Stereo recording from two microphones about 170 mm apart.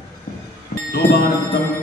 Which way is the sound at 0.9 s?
65° left (ahead or behind).